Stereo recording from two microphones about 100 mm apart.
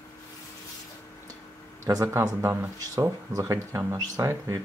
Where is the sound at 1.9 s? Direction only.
40° right (ahead or behind).